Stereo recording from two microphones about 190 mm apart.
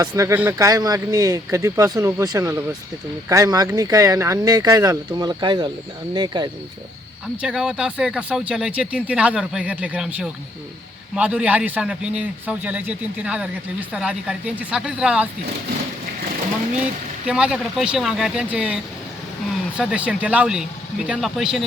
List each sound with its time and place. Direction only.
0.0 s speech: 15° right (ahead or behind)
7.4 s speech: 5° right (ahead or behind)
17.2 s speech: 5° right (ahead or behind)